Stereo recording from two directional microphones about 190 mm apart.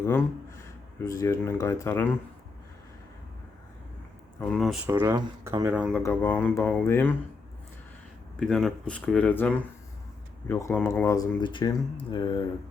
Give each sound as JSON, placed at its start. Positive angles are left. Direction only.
{"t": 0.0, "sound": "speech", "side_deg": 10}
{"t": 4.4, "sound": "speech", "side_deg": 5}
{"t": 4.9, "sound": "speech", "side_deg": -15}
{"t": 6.0, "sound": "speech", "side_deg": 10}
{"t": 8.4, "sound": "speech", "side_deg": 0}